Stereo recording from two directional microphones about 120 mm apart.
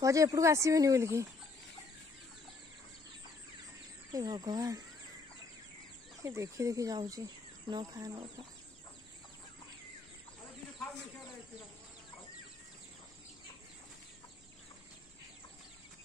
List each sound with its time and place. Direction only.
0.0 s speech: 25° right (ahead or behind)
4.1 s speech: 30° right (ahead or behind)
6.2 s speech: 25° right (ahead or behind)